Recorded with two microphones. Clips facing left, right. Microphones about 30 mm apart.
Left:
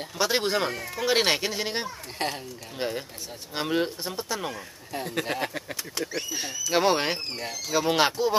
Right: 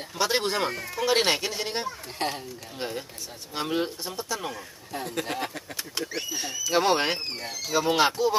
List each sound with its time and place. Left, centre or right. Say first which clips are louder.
0.2 s speech: even; centre
2.8 s speech: left 3 dB; centre